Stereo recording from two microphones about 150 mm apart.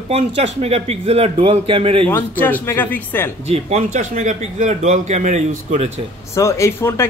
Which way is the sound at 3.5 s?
45° right (ahead or behind).